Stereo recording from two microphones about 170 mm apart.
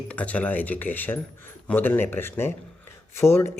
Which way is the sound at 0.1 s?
10° left (ahead or behind).